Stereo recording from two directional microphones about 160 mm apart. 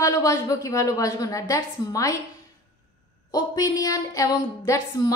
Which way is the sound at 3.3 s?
25° left (ahead or behind).